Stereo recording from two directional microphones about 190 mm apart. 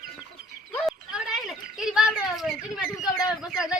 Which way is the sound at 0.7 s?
5° left (ahead or behind).